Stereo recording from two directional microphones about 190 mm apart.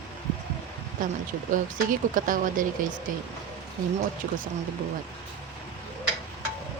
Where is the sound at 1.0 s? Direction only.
45° right (ahead or behind).